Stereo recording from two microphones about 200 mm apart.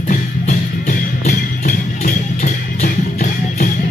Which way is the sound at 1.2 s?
40° left (ahead or behind).